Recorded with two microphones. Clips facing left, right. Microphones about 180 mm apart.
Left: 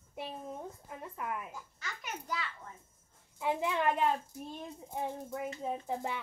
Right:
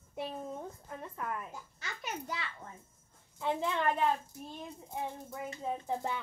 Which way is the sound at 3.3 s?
10° left (ahead or behind).